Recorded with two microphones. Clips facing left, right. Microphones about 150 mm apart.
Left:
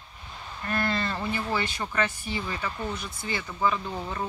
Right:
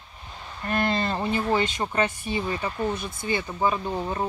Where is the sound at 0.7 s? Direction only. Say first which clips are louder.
Right 4 dB; 20° right (ahead or behind).